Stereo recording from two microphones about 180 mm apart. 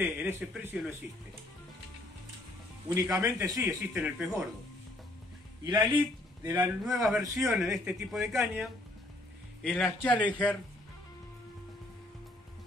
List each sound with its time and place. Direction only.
0.0 s speech: 10° right (ahead or behind)
2.9 s speech: 20° right (ahead or behind)
5.7 s speech: 25° right (ahead or behind)
6.4 s a man's voice: 10° right (ahead or behind); by 10.6 s 10° left (ahead or behind)